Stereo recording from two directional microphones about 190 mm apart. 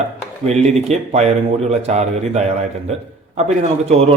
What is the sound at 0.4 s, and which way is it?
A man's voice, 35° right (ahead or behind).